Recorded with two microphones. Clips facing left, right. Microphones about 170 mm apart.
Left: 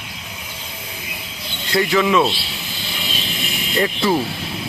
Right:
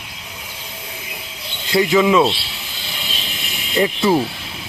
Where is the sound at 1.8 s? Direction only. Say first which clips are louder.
Right 3 dB; 15° right (ahead or behind).